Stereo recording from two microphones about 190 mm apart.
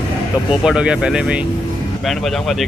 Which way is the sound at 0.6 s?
5° right (ahead or behind).